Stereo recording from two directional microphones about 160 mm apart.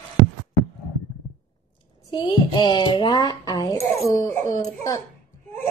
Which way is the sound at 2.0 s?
25° left (ahead or behind).